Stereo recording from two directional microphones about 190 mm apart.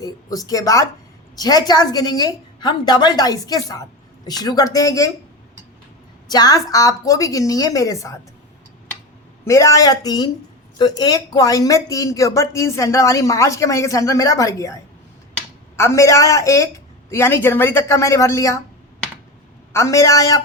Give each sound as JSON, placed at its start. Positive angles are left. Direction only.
{"t": 0.0, "sound": "a woman's voice", "side_deg": 20}
{"t": 6.3, "sound": "speech", "side_deg": 20}
{"t": 9.5, "sound": "a woman's voice", "side_deg": 15}
{"t": 19.7, "sound": "speech", "side_deg": 15}